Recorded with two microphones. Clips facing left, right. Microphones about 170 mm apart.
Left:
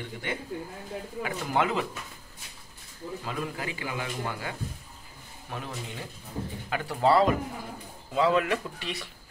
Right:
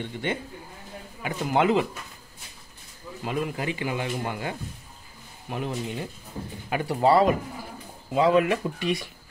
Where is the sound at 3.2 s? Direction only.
25° right (ahead or behind).